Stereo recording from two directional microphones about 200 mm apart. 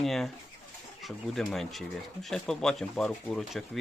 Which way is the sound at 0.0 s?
Centre (ahead or behind).